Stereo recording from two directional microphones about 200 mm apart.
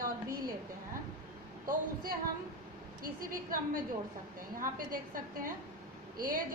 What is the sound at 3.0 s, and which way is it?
A woman's voice, 45° right (ahead or behind).